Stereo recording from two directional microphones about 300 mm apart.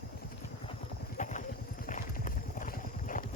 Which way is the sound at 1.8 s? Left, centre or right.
Left.